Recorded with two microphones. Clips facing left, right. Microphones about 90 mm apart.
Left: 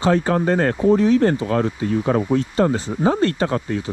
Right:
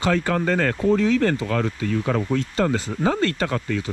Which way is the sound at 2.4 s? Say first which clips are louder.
Left 3 dB; 20° left (ahead or behind).